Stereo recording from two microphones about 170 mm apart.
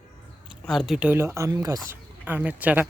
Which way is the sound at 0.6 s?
Centre (ahead or behind).